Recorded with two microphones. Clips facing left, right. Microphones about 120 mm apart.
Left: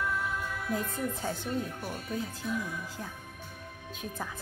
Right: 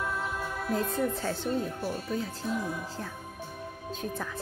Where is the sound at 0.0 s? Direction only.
25° right (ahead or behind).